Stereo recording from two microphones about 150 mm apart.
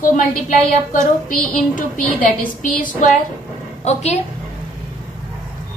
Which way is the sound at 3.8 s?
45° left (ahead or behind).